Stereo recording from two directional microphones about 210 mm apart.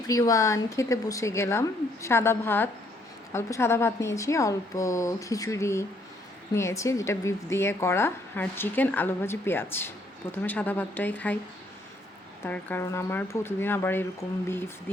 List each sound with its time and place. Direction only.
0.1 s speech: 15° left (ahead or behind)
12.5 s speech: 10° left (ahead or behind)